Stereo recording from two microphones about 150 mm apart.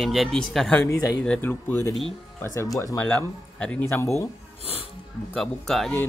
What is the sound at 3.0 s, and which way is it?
Speech, 10° left (ahead or behind).